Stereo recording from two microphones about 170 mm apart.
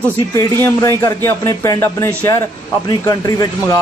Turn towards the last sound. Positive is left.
turn(degrees=20)  # may be behind; listen again after turning